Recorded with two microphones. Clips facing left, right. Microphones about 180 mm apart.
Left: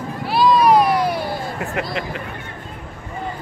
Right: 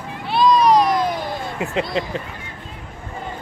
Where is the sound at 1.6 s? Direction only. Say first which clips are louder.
Right 5 dB; 20° right (ahead or behind).